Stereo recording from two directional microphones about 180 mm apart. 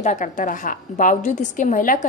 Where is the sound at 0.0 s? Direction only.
40° left (ahead or behind).